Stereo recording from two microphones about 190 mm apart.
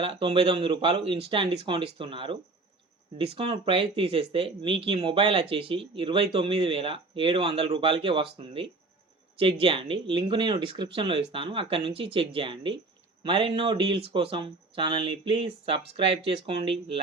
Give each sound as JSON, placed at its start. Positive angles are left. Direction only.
{"t": 0.0, "sound": "speech", "side_deg": -30}